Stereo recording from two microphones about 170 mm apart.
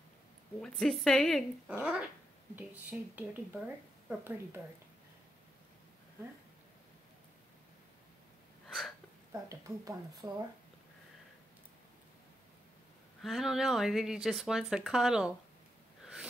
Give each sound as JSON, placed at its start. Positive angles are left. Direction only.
{"t": 0.6, "sound": "speech", "side_deg": 0}
{"t": 1.8, "sound": "speech", "side_deg": -10}
{"t": 8.6, "sound": "hiccup", "side_deg": 0}
{"t": 9.3, "sound": "speech", "side_deg": -20}
{"t": 13.2, "sound": "speech", "side_deg": 0}